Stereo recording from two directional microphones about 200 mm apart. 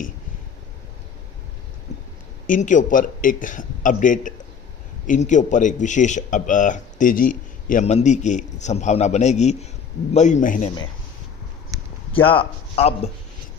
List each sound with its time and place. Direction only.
1.9 s a sound: 35° left (ahead or behind)
2.4 s speech: 40° left (ahead or behind)
12.1 s speech: 25° left (ahead or behind)